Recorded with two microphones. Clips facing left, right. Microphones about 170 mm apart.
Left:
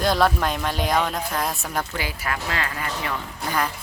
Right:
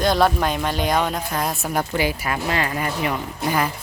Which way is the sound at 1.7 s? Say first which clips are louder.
Right 6 dB; 20° right (ahead or behind).